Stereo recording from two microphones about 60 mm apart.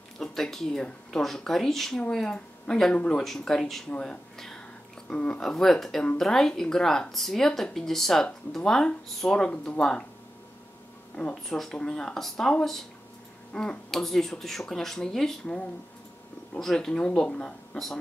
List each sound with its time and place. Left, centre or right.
0.2 s speech: centre
3.9 s speech: centre
11.4 s speech: centre
16.5 s speech: centre